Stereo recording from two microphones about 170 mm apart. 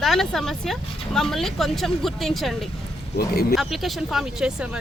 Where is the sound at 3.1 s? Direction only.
65° left (ahead or behind).